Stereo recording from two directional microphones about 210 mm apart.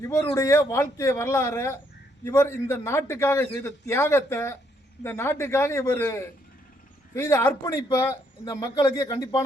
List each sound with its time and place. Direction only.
0.1 s a man's voice: 10° left (ahead or behind)